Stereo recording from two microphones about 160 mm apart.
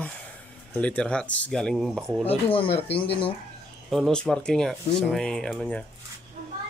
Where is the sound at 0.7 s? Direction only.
10° left (ahead or behind).